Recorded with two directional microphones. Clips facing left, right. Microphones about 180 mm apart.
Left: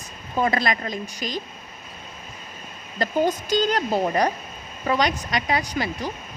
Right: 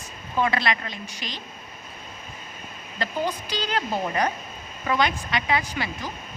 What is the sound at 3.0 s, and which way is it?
A woman's voice, 45° left (ahead or behind).